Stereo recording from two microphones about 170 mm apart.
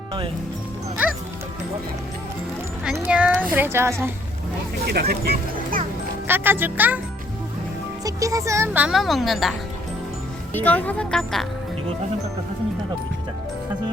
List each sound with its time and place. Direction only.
2.9 s speech: 10° right (ahead or behind)
4.9 s speech: 70° right (ahead or behind)
6.2 s speech: 10° right (ahead or behind)
8.0 s speech: 20° right (ahead or behind); by 11.4 s centre (ahead or behind)